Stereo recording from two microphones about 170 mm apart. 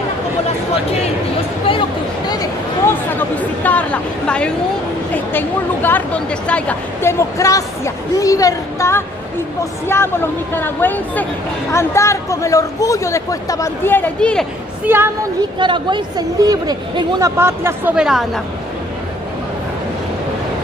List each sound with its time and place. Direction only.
1.7 s speech: 25° left (ahead or behind); by 14.4 s 10° left (ahead or behind)
14.9 s speech: 10° right (ahead or behind)
15.6 s speech: 30° right (ahead or behind)
17.4 s speech: 15° right (ahead or behind)